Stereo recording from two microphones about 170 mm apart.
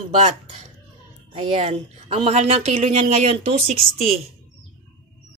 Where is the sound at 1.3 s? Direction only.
40° right (ahead or behind).